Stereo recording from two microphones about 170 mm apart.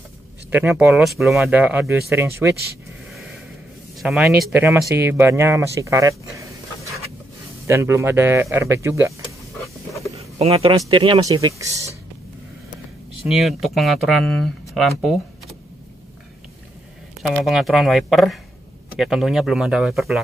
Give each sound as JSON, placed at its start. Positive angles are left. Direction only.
{"t": 0.5, "sound": "speech", "side_deg": -10}
{"t": 4.0, "sound": "speech", "side_deg": 0}
{"t": 4.3, "sound": "speech", "side_deg": -15}
{"t": 9.5, "sound": "a sound", "side_deg": 20}
{"t": 10.1, "sound": "a sound", "side_deg": -35}
{"t": 10.9, "sound": "speech", "side_deg": -30}
{"t": 13.3, "sound": "speech", "side_deg": 0}
{"t": 17.2, "sound": "speech", "side_deg": 0}